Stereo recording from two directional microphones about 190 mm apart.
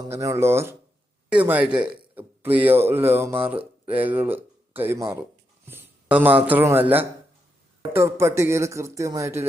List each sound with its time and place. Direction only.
0.1 s speech: 15° right (ahead or behind)